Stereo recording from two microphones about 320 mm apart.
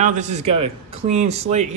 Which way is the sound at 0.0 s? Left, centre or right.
Right.